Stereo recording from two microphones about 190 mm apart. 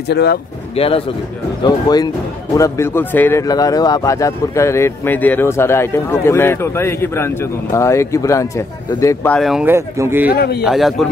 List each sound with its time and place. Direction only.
0.1 s a man's voice: 60° left (ahead or behind)
0.7 s a man's voice: 30° left (ahead or behind); by 9.4 s 15° left (ahead or behind)
9.4 s a man's voice: centre (ahead or behind)
9.7 s speech: 15° right (ahead or behind)
10.3 s a man's voice: 55° left (ahead or behind)
10.6 s a man's voice: centre (ahead or behind)